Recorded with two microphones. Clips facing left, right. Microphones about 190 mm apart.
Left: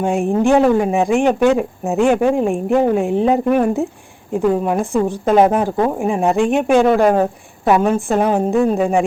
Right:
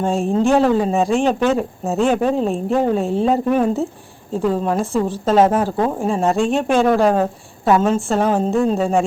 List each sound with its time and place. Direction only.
0.0 s a woman's voice: 15° left (ahead or behind)